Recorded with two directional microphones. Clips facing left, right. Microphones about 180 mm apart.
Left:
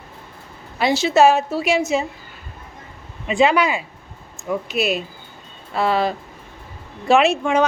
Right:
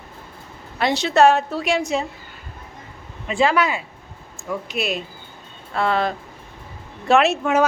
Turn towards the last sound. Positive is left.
turn(degrees=0)  # may be behind; listen again after turning